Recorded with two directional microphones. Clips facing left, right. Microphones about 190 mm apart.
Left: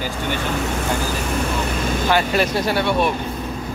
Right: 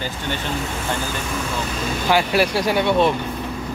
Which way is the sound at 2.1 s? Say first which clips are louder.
Right 2 dB; 10° right (ahead or behind).